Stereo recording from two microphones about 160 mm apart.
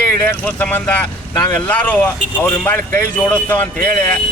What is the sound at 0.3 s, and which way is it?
Speech, 10° left (ahead or behind).